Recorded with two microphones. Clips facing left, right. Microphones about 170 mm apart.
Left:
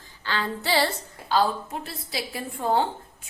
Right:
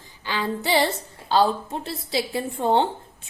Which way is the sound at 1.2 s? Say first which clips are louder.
Right 3 dB; 25° right (ahead or behind).